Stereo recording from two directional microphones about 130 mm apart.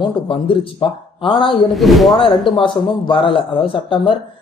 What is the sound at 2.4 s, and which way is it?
A man's voice, 40° left (ahead or behind).